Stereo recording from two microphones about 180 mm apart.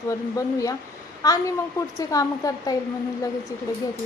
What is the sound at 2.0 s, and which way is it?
Speech, 20° left (ahead or behind).